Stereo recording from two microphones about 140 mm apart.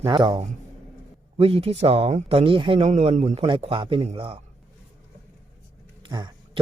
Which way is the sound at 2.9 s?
55° right (ahead or behind).